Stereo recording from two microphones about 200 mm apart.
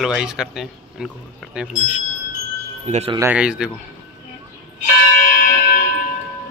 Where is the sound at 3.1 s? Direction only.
10° right (ahead or behind).